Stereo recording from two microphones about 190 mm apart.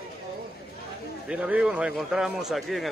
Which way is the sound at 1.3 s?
5° right (ahead or behind).